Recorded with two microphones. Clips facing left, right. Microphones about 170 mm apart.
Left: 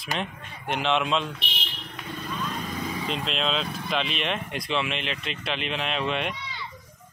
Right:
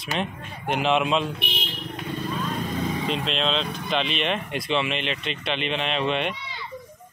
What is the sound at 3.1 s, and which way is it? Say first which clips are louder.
Speech: even; centre (ahead or behind).